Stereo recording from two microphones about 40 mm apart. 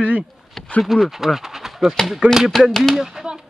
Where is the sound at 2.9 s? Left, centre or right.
Centre.